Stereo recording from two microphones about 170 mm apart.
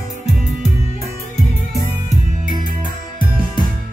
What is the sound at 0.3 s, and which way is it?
Music, 40° left (ahead or behind).